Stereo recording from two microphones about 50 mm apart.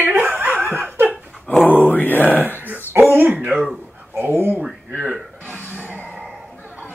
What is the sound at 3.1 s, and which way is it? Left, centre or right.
Speech, right.